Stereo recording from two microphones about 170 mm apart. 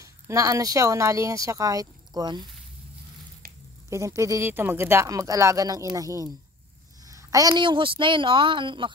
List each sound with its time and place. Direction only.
0.0 s speech: 20° right (ahead or behind)
3.9 s speech: 15° right (ahead or behind)